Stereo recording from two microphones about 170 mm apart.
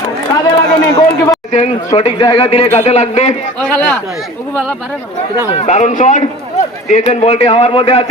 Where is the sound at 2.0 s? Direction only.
30° left (ahead or behind).